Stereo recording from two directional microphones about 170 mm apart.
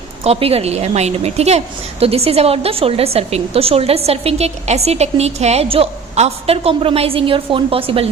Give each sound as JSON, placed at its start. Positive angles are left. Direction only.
{"t": 0.3, "sound": "a woman's voice", "side_deg": -35}